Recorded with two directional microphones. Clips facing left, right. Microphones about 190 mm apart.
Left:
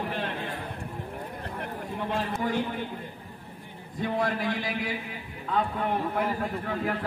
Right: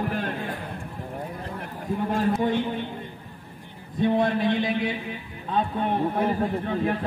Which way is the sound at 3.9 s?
25° right (ahead or behind).